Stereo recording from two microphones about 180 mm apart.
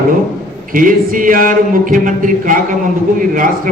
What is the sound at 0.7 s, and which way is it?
A man's voice, 50° right (ahead or behind).